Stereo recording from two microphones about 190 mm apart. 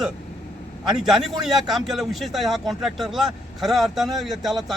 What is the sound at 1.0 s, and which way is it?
Speech, centre (ahead or behind).